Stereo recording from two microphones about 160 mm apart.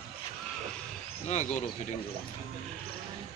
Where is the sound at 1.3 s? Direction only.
45° left (ahead or behind).